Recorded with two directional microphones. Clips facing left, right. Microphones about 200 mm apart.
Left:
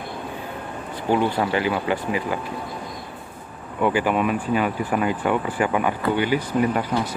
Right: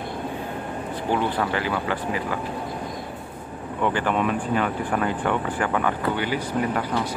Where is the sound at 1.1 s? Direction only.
15° left (ahead or behind).